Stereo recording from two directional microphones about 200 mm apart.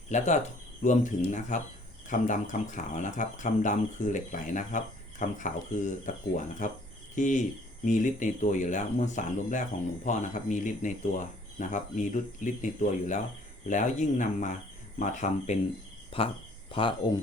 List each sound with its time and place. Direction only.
0.1 s speech: 35° left (ahead or behind)
16.1 s cricket: 30° left (ahead or behind)